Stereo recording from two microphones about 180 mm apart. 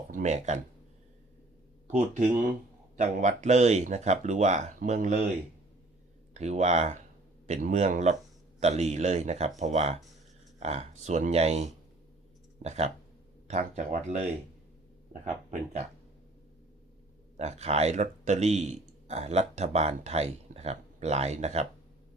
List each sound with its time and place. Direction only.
0.1 s speech: 40° right (ahead or behind)
1.9 s speech: 45° right (ahead or behind)
6.3 s speech: 40° right (ahead or behind)
17.3 s speech: 40° right (ahead or behind)